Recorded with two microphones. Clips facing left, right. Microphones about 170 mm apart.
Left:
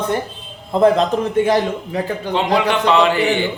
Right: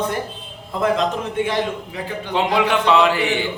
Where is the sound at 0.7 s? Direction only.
35° left (ahead or behind).